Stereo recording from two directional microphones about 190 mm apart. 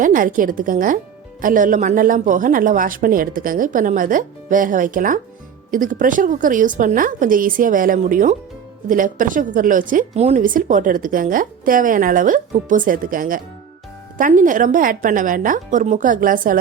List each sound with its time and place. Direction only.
0.0 s speech: 45° right (ahead or behind)